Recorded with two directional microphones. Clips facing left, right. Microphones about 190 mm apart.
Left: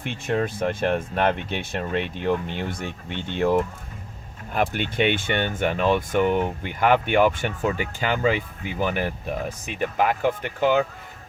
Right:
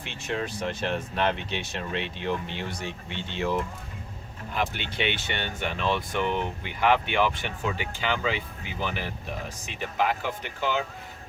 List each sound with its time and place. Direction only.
0.0 s speech: 50° left (ahead or behind)